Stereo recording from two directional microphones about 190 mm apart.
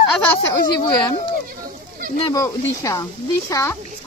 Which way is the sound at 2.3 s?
15° left (ahead or behind).